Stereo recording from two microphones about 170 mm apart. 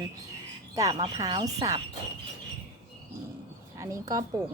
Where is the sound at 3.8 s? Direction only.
20° right (ahead or behind).